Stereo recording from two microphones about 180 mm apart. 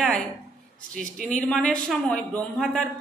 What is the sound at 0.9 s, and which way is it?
Speech, 50° right (ahead or behind).